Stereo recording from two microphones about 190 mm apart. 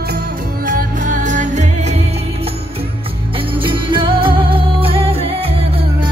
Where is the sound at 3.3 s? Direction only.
25° right (ahead or behind).